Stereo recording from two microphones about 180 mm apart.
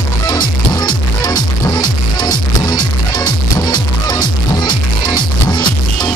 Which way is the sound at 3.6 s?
25° left (ahead or behind).